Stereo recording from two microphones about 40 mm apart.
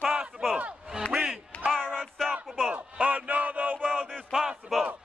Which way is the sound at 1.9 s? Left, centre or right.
Centre.